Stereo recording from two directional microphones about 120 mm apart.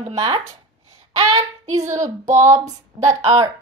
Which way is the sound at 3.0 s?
40° right (ahead or behind).